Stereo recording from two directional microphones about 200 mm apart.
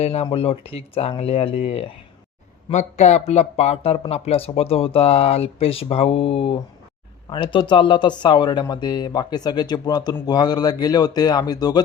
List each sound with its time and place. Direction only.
0.0 s speech: 30° left (ahead or behind)